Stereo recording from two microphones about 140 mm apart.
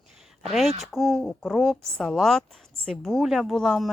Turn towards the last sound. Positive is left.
turn(degrees=5)  # may be behind; listen again after turning